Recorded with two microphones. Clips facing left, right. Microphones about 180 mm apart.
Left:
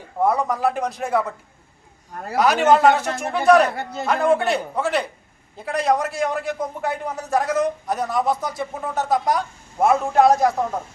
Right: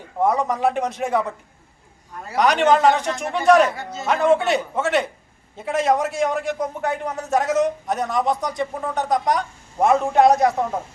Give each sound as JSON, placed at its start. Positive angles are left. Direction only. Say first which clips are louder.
{"t": 0.2, "sound": "a man's voice", "louder": "even", "side_deg": 0}
{"t": 2.3, "sound": "a man's voice", "louder": "left 1 dB", "side_deg": 5}